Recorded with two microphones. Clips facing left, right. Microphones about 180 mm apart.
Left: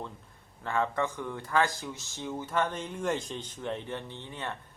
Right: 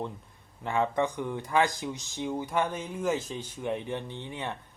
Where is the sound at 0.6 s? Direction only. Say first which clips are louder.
Right 3 dB; 15° right (ahead or behind).